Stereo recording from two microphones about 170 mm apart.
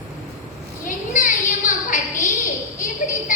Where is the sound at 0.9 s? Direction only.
50° left (ahead or behind).